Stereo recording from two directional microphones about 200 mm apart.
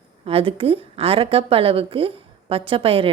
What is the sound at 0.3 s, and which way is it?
A woman's voice, 25° right (ahead or behind).